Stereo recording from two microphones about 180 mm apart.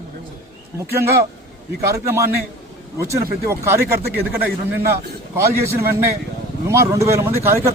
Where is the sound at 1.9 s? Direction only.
15° right (ahead or behind).